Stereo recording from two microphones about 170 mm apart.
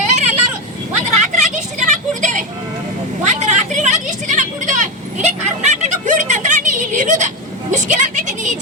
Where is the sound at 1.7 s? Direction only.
45° right (ahead or behind).